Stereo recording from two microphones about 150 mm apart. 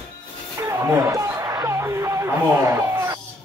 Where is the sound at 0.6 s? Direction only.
20° right (ahead or behind).